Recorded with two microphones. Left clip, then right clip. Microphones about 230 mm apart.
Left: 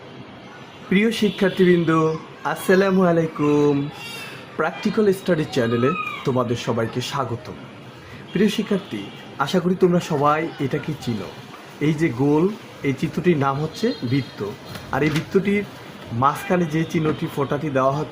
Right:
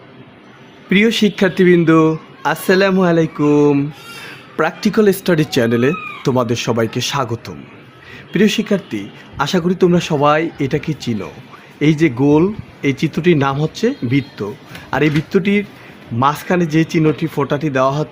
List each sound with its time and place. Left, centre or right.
0.9 s a man's voice: right
4.5 s a man's voice: right